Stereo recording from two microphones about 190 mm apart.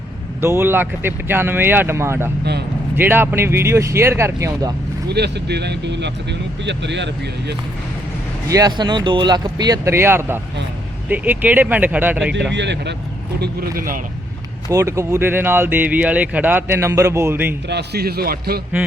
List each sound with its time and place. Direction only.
0.4 s speech: 10° right (ahead or behind)
2.4 s speech: 60° right (ahead or behind)
2.9 s speech: 10° right (ahead or behind)
5.0 s speech: 60° right (ahead or behind)
8.4 s speech: 20° right (ahead or behind)
12.5 s speech: 65° right (ahead or behind)
13.4 s a man's voice: 50° right (ahead or behind)
14.7 s speech: 15° right (ahead or behind)
17.7 s speech: 60° right (ahead or behind)